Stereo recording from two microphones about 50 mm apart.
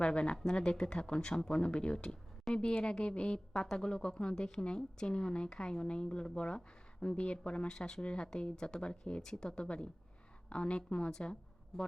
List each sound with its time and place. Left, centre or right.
0.0 s a woman's voice: left